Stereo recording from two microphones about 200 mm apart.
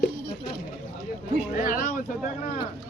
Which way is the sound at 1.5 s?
45° left (ahead or behind).